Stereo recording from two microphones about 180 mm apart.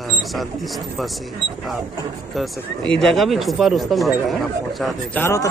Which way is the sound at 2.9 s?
5° left (ahead or behind).